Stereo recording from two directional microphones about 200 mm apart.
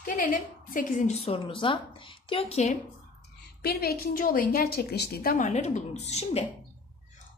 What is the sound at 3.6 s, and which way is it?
A woman's voice, 50° left (ahead or behind).